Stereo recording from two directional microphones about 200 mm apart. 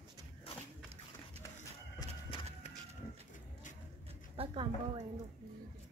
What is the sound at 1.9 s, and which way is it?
Horse, 25° left (ahead or behind).